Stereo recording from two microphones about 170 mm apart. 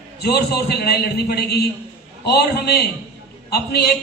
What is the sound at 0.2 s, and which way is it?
A man's voice, 70° left (ahead or behind).